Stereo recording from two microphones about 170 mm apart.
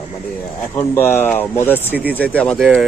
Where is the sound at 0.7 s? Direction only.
15° left (ahead or behind).